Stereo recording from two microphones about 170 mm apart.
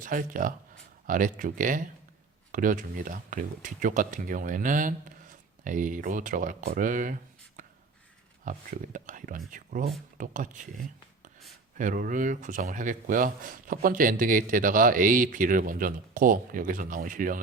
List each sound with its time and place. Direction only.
0.0 s speech: 50° right (ahead or behind)
11.8 s speech: 50° right (ahead or behind)